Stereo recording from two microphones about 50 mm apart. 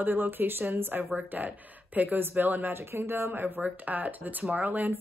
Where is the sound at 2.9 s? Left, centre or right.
Right.